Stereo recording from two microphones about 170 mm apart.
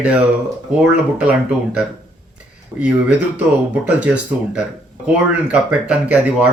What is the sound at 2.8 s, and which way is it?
Speech, 5° right (ahead or behind).